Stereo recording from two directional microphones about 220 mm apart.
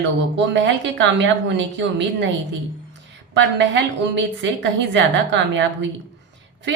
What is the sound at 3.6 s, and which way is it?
A woman's voice, 55° right (ahead or behind).